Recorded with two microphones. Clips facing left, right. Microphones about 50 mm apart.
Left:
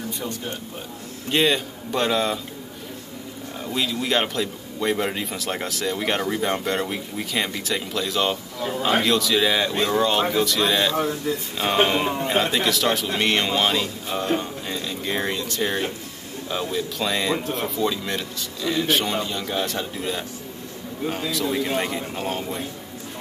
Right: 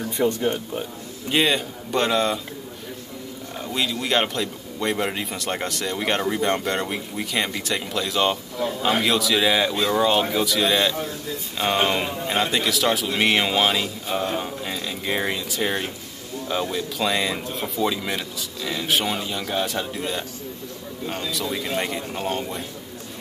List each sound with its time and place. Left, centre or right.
0.2 s speech: right
1.3 s a man's voice: centre
3.6 s a man's voice: centre